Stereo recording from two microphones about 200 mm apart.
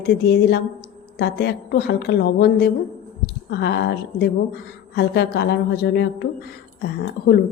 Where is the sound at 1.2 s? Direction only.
55° left (ahead or behind).